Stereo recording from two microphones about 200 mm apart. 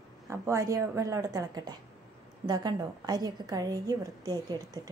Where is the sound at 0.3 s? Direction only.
15° right (ahead or behind).